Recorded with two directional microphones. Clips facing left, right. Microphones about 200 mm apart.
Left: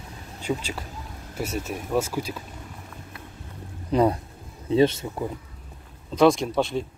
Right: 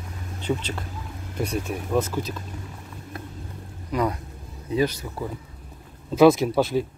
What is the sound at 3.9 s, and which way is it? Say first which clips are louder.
Speech: left 4 dB; 30° left (ahead or behind).